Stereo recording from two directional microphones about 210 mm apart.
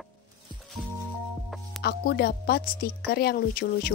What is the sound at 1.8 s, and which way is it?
Speech, 50° left (ahead or behind).